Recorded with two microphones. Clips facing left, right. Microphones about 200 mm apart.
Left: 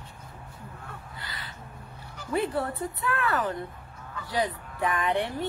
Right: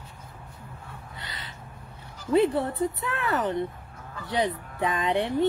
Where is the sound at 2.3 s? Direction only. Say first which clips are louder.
Right 6 dB; 20° right (ahead or behind).